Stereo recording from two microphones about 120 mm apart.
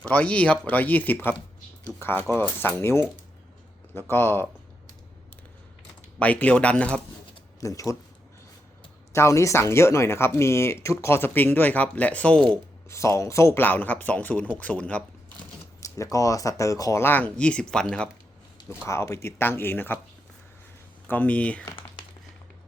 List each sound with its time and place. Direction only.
0.0 s speech: 10° left (ahead or behind)
2.2 s speech: 5° left (ahead or behind)
2.6 s speech: 20° left (ahead or behind)
4.1 s speech: 20° left (ahead or behind)
6.1 s speech: 10° left (ahead or behind)
7.6 s speech: 25° left (ahead or behind)
9.1 s speech: 25° left (ahead or behind); by 12.5 s 10° left (ahead or behind)
12.9 s speech: 25° left (ahead or behind)
15.8 s a sound: 25° left (ahead or behind)
16.1 s speech: 30° left (ahead or behind); by 18.1 s 5° left (ahead or behind)
18.9 s speech: 25° left (ahead or behind)
21.1 s speech: 10° left (ahead or behind)